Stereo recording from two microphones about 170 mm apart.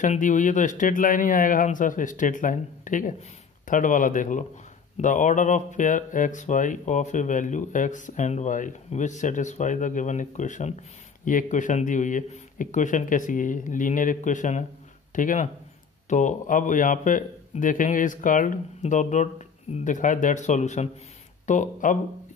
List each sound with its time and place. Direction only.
0.0 s speech: 45° left (ahead or behind)